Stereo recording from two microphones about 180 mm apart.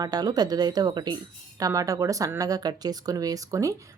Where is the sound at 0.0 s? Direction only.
20° right (ahead or behind).